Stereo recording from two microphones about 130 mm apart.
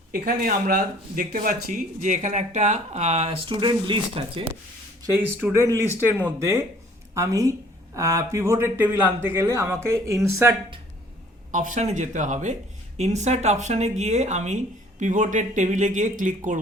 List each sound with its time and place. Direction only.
0.4 s speech: 90° right; by 4.4 s 40° right (ahead or behind)
5.1 s a man's voice: 10° right (ahead or behind)
11.5 s speech: 70° right (ahead or behind)
13.0 s speech: 60° right (ahead or behind); by 16.6 s 80° right